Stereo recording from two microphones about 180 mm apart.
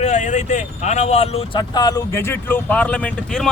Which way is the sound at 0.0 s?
40° left (ahead or behind).